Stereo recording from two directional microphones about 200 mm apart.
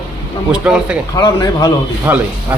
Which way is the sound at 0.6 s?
5° right (ahead or behind).